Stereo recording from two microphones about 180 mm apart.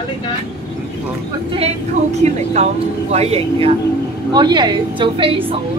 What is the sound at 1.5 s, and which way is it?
A woman's voice, 35° right (ahead or behind).